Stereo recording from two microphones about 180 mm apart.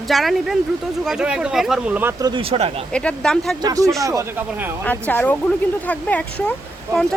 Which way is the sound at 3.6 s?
20° right (ahead or behind).